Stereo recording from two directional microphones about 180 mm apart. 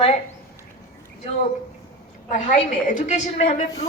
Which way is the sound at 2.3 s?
45° left (ahead or behind).